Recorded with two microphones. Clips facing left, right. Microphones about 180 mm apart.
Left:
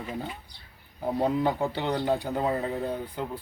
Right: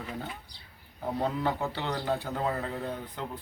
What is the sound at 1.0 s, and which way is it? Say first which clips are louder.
A man's voice: left 4 dB; 15° left (ahead or behind).